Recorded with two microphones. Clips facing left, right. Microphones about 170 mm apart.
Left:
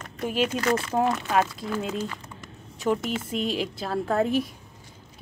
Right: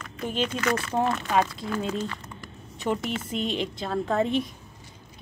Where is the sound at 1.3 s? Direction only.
Centre (ahead or behind).